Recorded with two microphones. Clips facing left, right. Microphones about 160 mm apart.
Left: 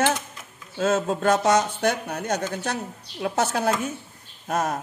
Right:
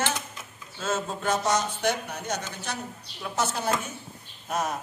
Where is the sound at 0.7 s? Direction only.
55° left (ahead or behind).